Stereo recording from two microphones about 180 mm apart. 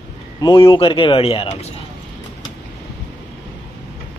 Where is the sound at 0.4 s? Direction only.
25° left (ahead or behind).